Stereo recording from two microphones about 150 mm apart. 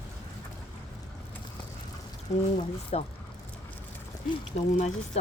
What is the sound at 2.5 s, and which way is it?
Speech, 45° left (ahead or behind).